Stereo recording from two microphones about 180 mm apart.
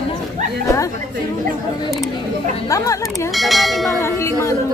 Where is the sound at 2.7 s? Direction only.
20° left (ahead or behind).